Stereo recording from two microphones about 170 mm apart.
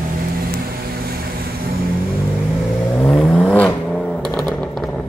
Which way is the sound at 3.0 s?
5° left (ahead or behind).